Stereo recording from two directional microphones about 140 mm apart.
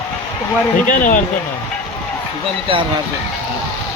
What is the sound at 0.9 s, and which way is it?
Speech, 85° left.